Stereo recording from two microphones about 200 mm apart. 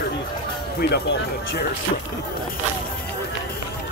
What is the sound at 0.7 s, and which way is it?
Speech, 55° left (ahead or behind).